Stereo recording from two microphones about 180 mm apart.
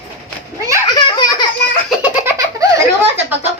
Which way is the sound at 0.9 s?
25° left (ahead or behind).